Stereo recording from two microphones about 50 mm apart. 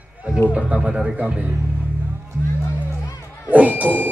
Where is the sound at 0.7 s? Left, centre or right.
Right.